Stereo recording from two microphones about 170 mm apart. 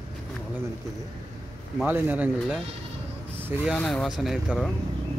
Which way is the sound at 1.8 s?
10° right (ahead or behind).